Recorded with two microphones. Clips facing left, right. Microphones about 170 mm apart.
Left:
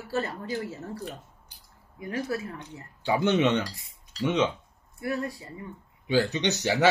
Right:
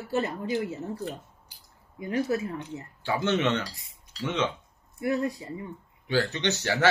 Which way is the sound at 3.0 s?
15° left (ahead or behind).